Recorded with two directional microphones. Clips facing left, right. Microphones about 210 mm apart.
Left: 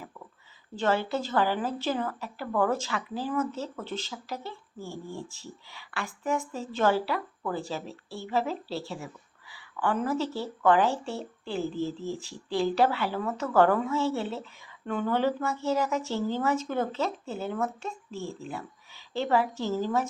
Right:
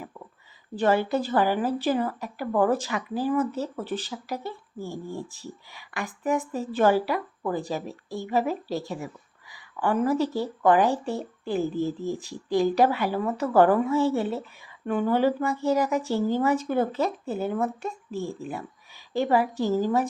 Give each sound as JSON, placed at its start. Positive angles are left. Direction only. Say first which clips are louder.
{"t": 0.8, "sound": "speech", "louder": "right 4 dB", "side_deg": -15}